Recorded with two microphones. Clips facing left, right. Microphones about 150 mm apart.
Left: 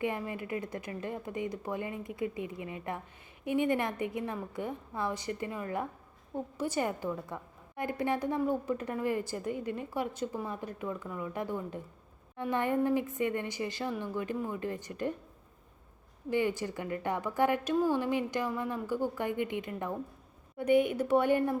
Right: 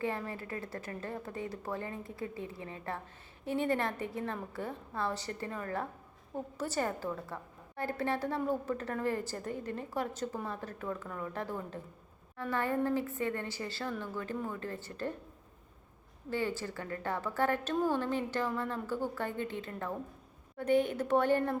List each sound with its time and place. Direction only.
0.0 s a woman's voice: 15° left (ahead or behind)
16.3 s a woman's voice: 15° left (ahead or behind)